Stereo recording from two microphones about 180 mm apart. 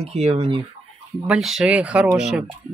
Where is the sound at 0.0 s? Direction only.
35° right (ahead or behind).